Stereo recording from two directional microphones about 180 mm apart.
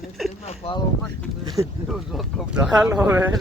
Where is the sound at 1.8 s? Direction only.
Centre (ahead or behind).